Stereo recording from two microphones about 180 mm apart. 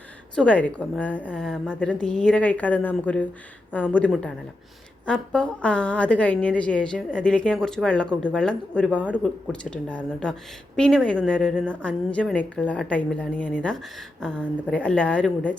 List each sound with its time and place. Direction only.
0.3 s a woman's voice: 5° left (ahead or behind)